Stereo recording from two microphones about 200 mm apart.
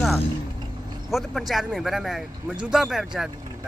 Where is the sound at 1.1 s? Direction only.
Centre (ahead or behind).